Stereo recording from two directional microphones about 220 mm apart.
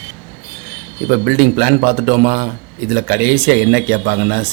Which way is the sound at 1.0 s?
45° right (ahead or behind).